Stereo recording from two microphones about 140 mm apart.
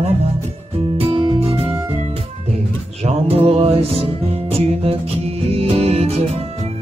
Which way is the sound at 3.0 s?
45° right (ahead or behind).